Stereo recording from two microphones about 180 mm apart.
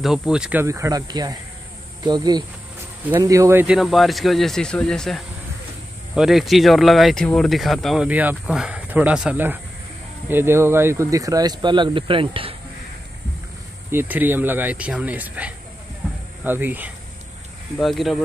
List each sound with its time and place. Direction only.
0.0 s speech: 5° right (ahead or behind); by 12.5 s 30° right (ahead or behind)
13.8 s speech: 10° right (ahead or behind)
16.0 s a sound: 5° right (ahead or behind)
16.4 s speech: 10° right (ahead or behind)
17.7 s speech: centre (ahead or behind)